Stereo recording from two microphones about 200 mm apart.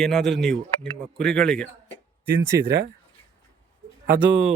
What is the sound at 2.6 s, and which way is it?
Speech, 55° right (ahead or behind).